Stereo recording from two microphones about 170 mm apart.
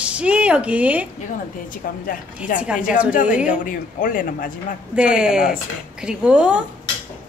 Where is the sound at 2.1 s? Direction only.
50° left (ahead or behind).